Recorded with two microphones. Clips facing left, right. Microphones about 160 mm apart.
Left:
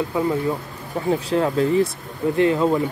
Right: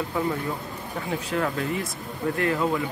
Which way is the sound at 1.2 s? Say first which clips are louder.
Left 5 dB; 30° left (ahead or behind).